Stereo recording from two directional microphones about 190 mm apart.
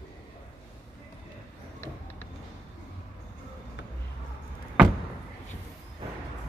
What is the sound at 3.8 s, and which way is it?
Music, 70° left (ahead or behind).